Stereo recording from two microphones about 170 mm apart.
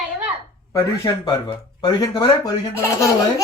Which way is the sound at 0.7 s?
20° left (ahead or behind).